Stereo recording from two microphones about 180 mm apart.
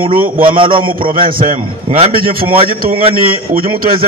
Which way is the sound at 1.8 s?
35° right (ahead or behind).